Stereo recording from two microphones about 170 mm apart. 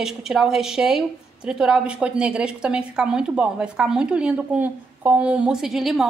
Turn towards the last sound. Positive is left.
turn(degrees=0)  # may be behind; listen again after turning